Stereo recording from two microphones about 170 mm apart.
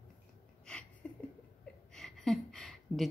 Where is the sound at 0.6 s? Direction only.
5° left (ahead or behind).